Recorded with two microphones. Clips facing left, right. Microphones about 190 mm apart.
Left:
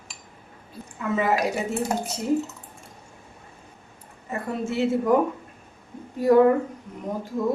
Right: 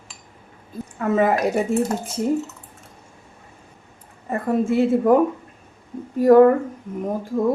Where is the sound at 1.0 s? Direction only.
50° right (ahead or behind).